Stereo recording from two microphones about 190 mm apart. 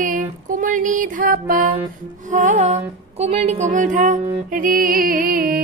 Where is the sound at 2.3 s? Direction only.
40° right (ahead or behind).